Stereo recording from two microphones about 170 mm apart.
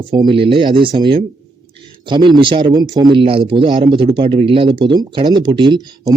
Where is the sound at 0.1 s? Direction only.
25° right (ahead or behind).